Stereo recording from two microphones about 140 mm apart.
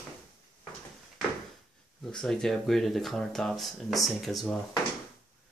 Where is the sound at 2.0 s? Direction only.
5° left (ahead or behind).